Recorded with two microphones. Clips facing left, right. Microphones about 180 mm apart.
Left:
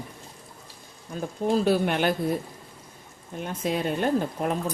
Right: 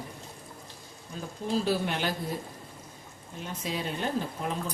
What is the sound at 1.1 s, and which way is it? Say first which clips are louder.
Speech: left 6 dB; 50° left (ahead or behind).